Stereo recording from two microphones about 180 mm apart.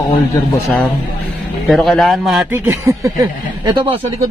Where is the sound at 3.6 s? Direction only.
25° right (ahead or behind).